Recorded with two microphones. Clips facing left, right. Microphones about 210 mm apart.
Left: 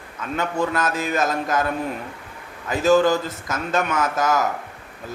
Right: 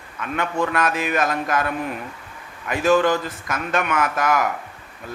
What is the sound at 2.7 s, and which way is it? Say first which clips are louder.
A man's voice: left 1 dB; 25° left (ahead or behind).